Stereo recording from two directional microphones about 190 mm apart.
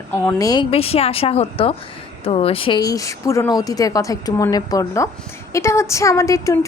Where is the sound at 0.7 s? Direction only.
30° left (ahead or behind).